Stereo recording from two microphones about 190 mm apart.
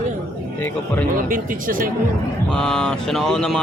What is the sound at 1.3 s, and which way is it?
Speech, 45° right (ahead or behind).